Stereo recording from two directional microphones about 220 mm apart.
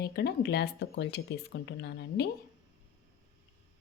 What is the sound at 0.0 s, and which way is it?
A woman's voice, 50° left (ahead or behind).